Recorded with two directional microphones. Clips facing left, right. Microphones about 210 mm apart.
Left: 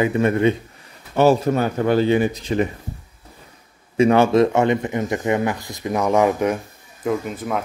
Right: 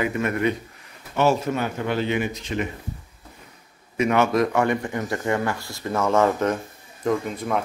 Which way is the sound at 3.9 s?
30° left (ahead or behind).